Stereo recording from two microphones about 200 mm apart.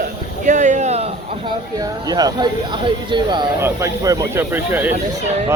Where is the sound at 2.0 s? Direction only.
20° right (ahead or behind).